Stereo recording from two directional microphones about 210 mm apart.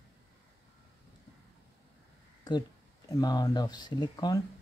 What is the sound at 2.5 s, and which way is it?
Speech, 15° left (ahead or behind).